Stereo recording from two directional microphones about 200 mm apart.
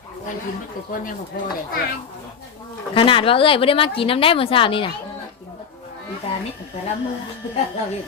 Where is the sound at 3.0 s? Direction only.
25° left (ahead or behind).